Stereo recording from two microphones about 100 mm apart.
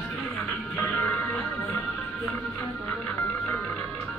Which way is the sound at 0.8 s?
20° left (ahead or behind).